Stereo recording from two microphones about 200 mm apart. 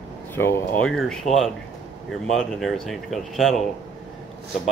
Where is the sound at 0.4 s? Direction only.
10° left (ahead or behind).